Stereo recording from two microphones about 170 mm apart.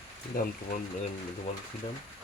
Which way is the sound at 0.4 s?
55° left (ahead or behind).